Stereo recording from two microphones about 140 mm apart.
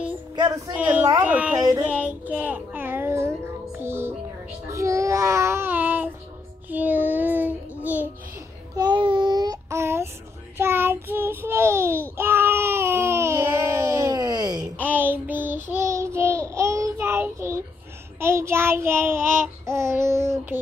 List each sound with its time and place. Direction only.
0.4 s speech: 30° right (ahead or behind)
0.7 s a woman's voice: 10° right (ahead or behind)
1.8 s child singing: 10° right (ahead or behind)
8.7 s child singing: 30° right (ahead or behind)
12.2 s a sound: 15° right (ahead or behind)
14.6 s child singing: 15° right (ahead or behind)